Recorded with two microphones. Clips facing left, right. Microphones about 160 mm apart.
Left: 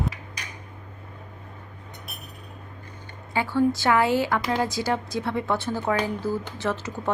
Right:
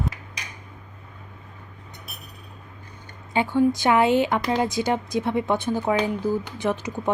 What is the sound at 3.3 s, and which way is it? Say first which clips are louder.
A woman's voice: right 2 dB; 20° right (ahead or behind).